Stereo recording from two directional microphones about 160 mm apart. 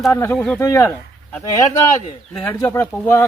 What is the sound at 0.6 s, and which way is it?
Speech, 20° left (ahead or behind).